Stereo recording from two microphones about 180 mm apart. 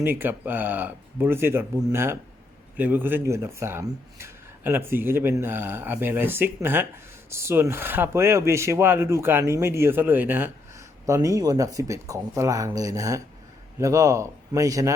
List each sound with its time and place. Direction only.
0.0 s speech: 10° right (ahead or behind)